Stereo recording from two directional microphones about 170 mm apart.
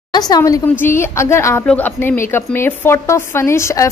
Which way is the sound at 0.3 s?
20° left (ahead or behind).